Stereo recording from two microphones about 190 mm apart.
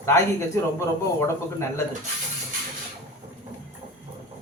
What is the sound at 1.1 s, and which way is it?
Speech, 15° left (ahead or behind).